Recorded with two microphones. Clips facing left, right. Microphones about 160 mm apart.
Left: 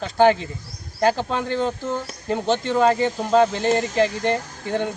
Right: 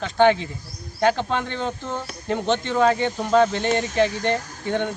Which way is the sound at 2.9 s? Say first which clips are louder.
Left 1 dB; centre (ahead or behind).